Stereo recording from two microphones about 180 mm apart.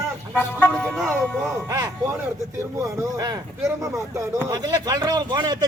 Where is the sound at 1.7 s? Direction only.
15° right (ahead or behind).